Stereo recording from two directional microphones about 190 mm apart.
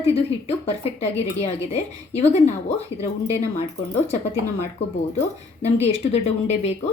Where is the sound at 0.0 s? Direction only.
30° left (ahead or behind).